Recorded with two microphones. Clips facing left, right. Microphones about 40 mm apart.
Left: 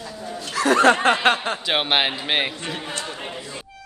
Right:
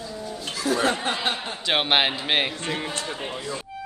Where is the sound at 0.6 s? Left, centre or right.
Left.